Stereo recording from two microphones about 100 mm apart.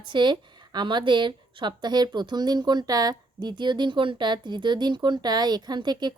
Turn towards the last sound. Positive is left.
turn(degrees=-45)  # may be behind; listen again after turning